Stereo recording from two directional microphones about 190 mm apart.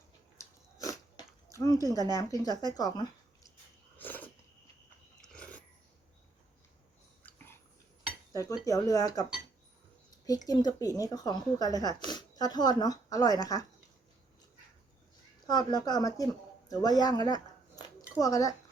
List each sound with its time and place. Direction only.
0.3 s biting: 20° left (ahead or behind)
1.5 s a sound: 15° left (ahead or behind)
2.1 s speech: 20° left (ahead or behind)
3.9 s dog: 10° left (ahead or behind)
5.2 s pulleys: 5° left (ahead or behind)
7.3 s a sound: 10° left (ahead or behind)
8.3 s cutlery: 20° left (ahead or behind)
8.6 s speech: 20° left (ahead or behind)
10.2 s speech: 20° left (ahead or behind)
15.4 s speech: 20° left (ahead or behind)